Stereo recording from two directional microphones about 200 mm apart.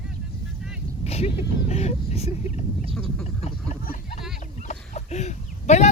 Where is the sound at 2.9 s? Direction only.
Centre (ahead or behind).